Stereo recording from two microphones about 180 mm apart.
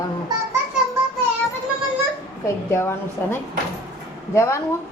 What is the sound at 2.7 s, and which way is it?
Speech, 15° left (ahead or behind).